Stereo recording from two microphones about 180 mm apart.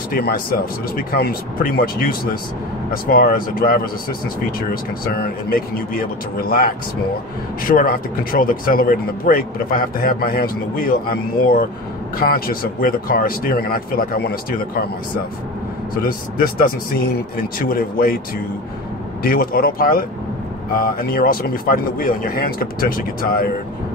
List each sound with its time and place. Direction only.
0.1 s speech: 60° left (ahead or behind)
16.0 s speech: 55° left (ahead or behind)
19.2 s speech: 55° left (ahead or behind)